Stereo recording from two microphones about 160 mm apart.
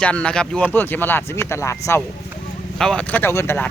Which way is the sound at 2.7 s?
5° left (ahead or behind).